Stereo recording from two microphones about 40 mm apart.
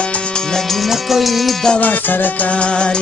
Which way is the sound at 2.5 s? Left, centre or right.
Left.